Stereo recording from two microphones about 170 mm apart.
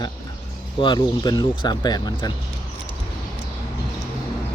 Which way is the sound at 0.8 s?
25° left (ahead or behind).